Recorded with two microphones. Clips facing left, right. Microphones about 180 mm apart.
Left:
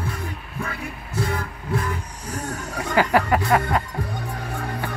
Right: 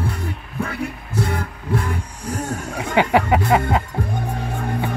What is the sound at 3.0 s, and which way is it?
Music, 20° right (ahead or behind).